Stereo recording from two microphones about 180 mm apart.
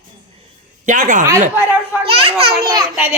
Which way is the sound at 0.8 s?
45° right (ahead or behind).